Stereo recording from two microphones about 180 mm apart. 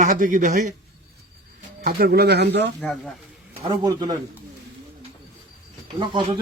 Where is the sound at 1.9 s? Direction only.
60° right (ahead or behind).